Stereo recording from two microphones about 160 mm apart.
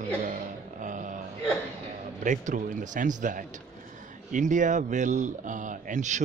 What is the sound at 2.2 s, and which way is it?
A man's voice, 50° right (ahead or behind).